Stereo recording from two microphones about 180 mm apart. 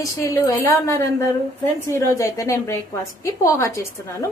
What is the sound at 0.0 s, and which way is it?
A woman's voice, 15° left (ahead or behind).